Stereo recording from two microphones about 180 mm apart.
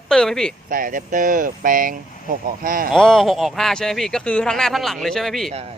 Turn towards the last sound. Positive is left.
turn(degrees=0)  # may be behind; listen again after turning